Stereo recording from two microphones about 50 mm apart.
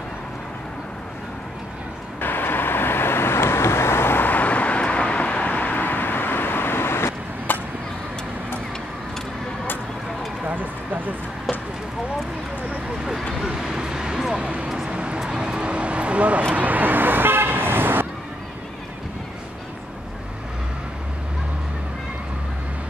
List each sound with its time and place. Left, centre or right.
2.1 s vehicle: left
10.4 s a sound: right
13.5 s vehicle: centre
14.3 s a sound: right
14.9 s vehicle: right
16.5 s car: right